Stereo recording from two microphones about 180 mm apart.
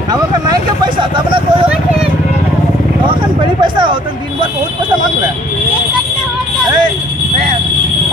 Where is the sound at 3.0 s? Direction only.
25° right (ahead or behind).